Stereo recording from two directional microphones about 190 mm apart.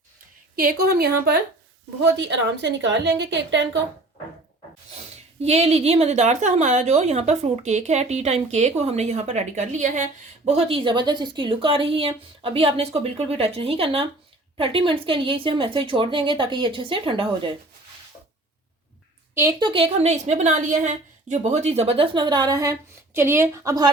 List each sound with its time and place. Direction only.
0.5 s speech: 55° right (ahead or behind)
2.1 s a woman's voice: 70° right (ahead or behind)
5.4 s a woman's voice: 35° right (ahead or behind)
19.3 s a woman's voice: 15° right (ahead or behind)
19.5 s a woman's voice: 25° right (ahead or behind)